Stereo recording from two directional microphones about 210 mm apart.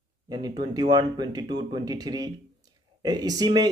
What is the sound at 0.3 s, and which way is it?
Speech, 20° right (ahead or behind).